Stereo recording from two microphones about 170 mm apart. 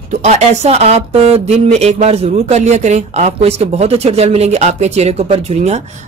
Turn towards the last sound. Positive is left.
turn(degrees=-40)  # may be behind; listen again after turning